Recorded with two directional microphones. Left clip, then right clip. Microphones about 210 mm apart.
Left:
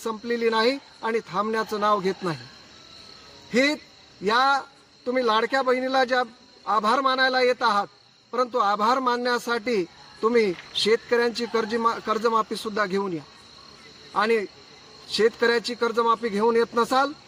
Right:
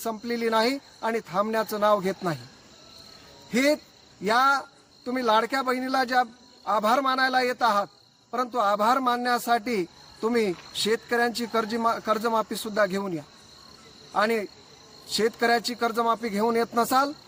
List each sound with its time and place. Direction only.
0.0 s a man's voice: 25° right (ahead or behind)
3.5 s a man's voice: 25° right (ahead or behind)